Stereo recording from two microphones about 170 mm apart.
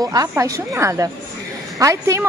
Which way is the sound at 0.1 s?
20° right (ahead or behind).